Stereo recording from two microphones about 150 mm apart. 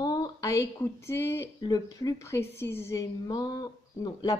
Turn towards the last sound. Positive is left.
turn(degrees=25)  # may be behind; listen again after turning